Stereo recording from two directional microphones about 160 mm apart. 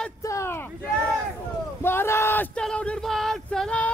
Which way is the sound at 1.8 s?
15° left (ahead or behind).